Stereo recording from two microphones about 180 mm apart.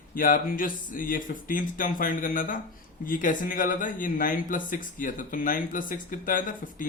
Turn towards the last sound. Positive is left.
turn(degrees=50)  # may be behind; listen again after turning